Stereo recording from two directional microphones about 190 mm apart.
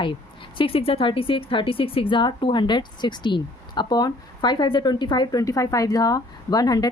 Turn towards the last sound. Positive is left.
turn(degrees=20)  # may be behind; listen again after turning